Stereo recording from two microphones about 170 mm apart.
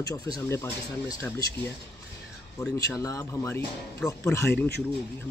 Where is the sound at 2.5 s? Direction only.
20° left (ahead or behind).